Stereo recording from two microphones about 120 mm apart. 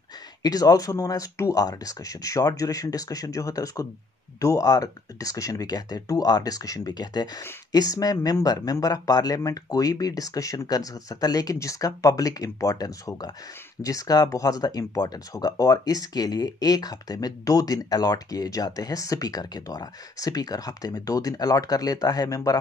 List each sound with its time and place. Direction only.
0.4 s speech: 30° left (ahead or behind)